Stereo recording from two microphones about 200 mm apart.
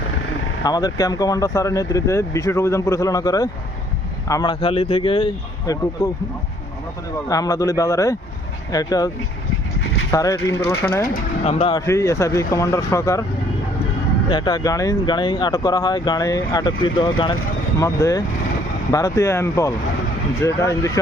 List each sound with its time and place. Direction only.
0.6 s speech: 20° left (ahead or behind)
7.3 s speech: 15° left (ahead or behind)
10.1 s speech: 15° left (ahead or behind)
11.4 s speech: 30° left (ahead or behind)
11.9 s speech: 15° left (ahead or behind)
14.3 s speech: 20° left (ahead or behind)